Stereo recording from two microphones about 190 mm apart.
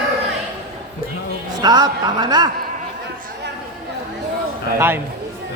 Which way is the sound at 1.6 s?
20° right (ahead or behind).